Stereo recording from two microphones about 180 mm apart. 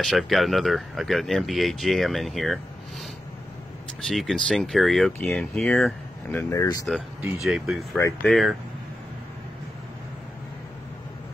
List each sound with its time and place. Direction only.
0.0 s speech: centre (ahead or behind)
4.1 s speech: centre (ahead or behind)
6.5 s speech: 20° left (ahead or behind)
7.4 s speech: 5° right (ahead or behind)